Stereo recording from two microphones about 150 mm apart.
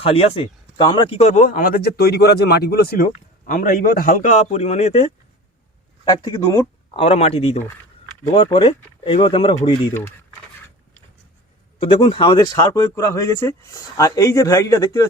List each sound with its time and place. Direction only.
0.0 s speech: 40° left (ahead or behind)
1.2 s speech: 55° left (ahead or behind)
6.1 s speech: 25° left (ahead or behind)
7.0 s speech: 40° left (ahead or behind)
11.9 s speech: 40° left (ahead or behind); by 15.0 s 20° left (ahead or behind)